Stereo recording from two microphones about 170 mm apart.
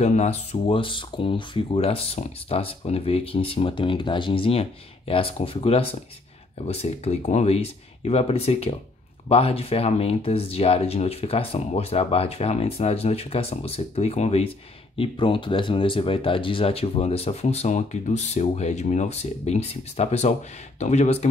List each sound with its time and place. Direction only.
0.0 s speech: 40° left (ahead or behind)